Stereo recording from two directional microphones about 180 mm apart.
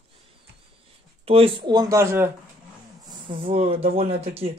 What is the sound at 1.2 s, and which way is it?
Speech, 30° right (ahead or behind).